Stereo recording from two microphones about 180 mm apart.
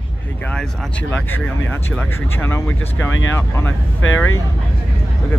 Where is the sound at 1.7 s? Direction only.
10° left (ahead or behind).